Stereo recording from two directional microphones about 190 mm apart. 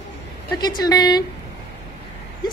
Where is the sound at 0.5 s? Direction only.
20° left (ahead or behind).